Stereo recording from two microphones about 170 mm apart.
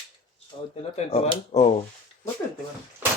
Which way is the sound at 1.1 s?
35° left (ahead or behind).